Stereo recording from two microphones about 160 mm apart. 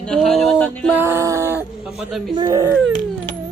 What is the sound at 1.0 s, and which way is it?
Speech, 15° right (ahead or behind).